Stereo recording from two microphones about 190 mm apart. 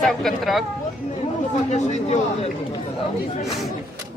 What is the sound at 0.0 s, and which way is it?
Speech, centre (ahead or behind).